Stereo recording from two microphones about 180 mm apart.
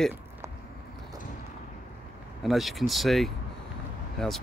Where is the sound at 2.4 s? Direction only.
Centre (ahead or behind).